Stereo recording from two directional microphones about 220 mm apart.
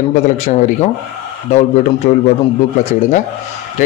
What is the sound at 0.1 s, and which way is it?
Speech, 35° left (ahead or behind).